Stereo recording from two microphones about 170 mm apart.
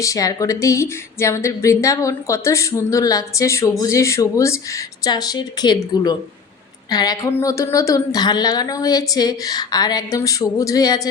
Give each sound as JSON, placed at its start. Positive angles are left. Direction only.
{"t": 0.0, "sound": "a woman's voice", "side_deg": 20}